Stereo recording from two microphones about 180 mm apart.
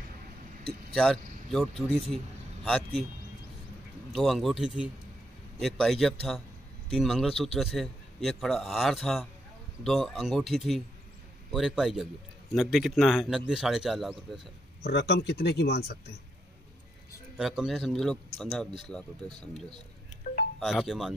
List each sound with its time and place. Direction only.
0.9 s a man's voice: centre (ahead or behind)
4.1 s a man's voice: centre (ahead or behind)
14.8 s speech: 65° left (ahead or behind)
17.4 s a man's voice: centre (ahead or behind)
20.5 s a man's voice: centre (ahead or behind)